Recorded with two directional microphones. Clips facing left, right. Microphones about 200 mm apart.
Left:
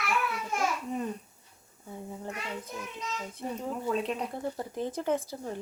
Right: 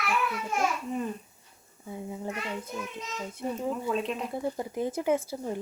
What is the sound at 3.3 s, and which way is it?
Speech, 10° right (ahead or behind).